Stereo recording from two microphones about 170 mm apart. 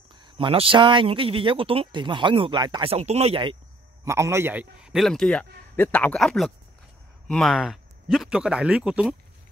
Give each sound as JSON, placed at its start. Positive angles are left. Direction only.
{"t": 0.1, "sound": "speech", "side_deg": -30}
{"t": 4.0, "sound": "a man's voice", "side_deg": -15}